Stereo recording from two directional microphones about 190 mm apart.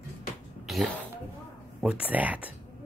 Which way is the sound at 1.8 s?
5° right (ahead or behind).